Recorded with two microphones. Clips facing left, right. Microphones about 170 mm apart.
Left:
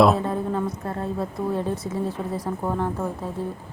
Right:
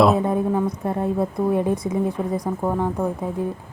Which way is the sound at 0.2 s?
15° right (ahead or behind).